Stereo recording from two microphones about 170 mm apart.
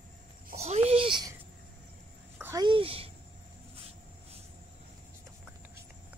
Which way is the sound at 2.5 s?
30° right (ahead or behind).